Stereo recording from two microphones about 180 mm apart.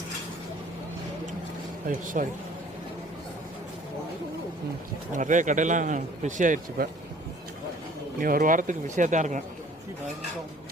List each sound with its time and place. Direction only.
1.9 s speech: 50° right (ahead or behind)
5.1 s speech: 45° right (ahead or behind)
8.2 s speech: 50° right (ahead or behind)